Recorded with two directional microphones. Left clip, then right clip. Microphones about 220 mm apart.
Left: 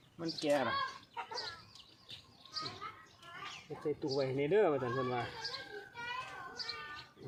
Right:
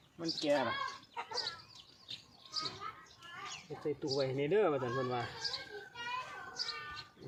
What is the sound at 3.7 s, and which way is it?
Speech, centre (ahead or behind).